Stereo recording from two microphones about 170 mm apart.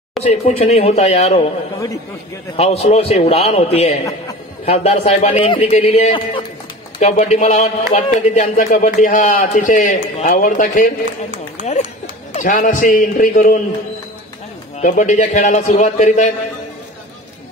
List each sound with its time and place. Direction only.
0.2 s a man's voice: 40° left (ahead or behind)
2.5 s a man's voice: 35° left (ahead or behind); by 10.9 s 55° left (ahead or behind)
12.4 s speech: 50° left (ahead or behind)
14.8 s speech: 45° left (ahead or behind)